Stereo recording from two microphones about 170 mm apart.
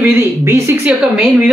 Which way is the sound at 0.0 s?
15° right (ahead or behind).